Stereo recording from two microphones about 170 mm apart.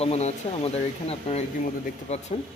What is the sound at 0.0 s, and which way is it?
Speech, 40° left (ahead or behind).